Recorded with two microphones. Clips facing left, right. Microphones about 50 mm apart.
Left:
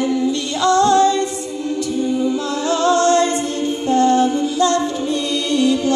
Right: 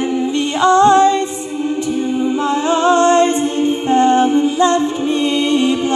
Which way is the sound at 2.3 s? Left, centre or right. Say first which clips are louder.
Right 4 dB; right.